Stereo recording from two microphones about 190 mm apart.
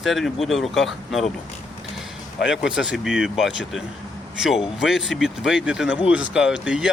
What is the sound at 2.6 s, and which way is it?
Speech, 5° right (ahead or behind).